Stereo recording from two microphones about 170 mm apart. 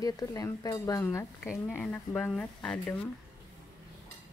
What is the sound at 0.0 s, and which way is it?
Stir, 20° left (ahead or behind).